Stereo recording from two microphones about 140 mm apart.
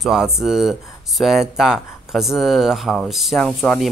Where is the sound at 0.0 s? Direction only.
Centre (ahead or behind).